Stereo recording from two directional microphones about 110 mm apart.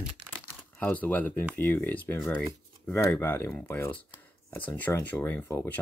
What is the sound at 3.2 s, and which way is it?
Speech, 20° left (ahead or behind).